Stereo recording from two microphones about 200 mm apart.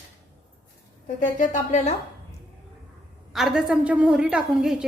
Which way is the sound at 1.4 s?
35° left (ahead or behind).